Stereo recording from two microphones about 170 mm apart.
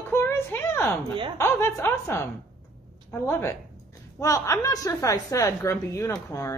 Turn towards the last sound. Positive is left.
turn(degrees=15)  # may be behind; listen again after turning